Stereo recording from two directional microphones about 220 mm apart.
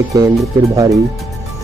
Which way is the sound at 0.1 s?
15° right (ahead or behind).